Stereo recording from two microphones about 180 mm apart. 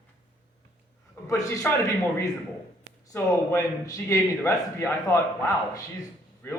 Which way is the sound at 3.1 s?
20° left (ahead or behind).